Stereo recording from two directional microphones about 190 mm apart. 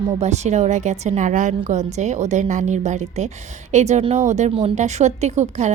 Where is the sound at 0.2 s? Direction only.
35° right (ahead or behind).